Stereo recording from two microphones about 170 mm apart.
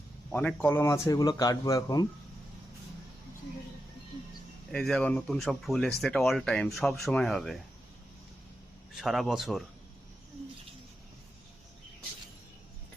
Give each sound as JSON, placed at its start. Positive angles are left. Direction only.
{"t": 0.3, "sound": "speech", "side_deg": 5}
{"t": 4.7, "sound": "speech", "side_deg": 5}
{"t": 9.0, "sound": "speech", "side_deg": 0}